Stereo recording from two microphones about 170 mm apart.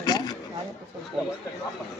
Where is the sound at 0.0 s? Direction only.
25° left (ahead or behind).